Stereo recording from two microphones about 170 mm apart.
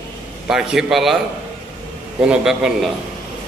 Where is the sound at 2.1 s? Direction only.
5° right (ahead or behind).